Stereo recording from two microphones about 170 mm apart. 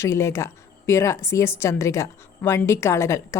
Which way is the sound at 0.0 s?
15° left (ahead or behind).